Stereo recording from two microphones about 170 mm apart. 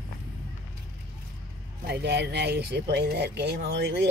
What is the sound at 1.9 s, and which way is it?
Speech, 80° right.